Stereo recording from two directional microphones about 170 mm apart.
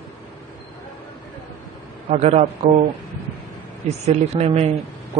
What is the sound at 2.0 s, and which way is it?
Speech, 40° right (ahead or behind).